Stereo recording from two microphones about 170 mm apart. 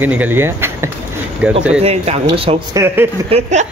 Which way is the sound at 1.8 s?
35° right (ahead or behind).